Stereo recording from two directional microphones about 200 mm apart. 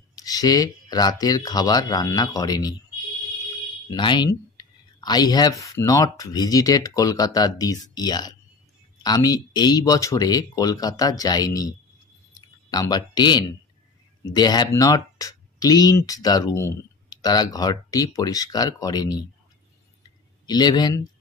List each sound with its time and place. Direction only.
0.1 s speech: 20° left (ahead or behind)
3.9 s speech: 20° left (ahead or behind)
20.4 s speech: 20° left (ahead or behind)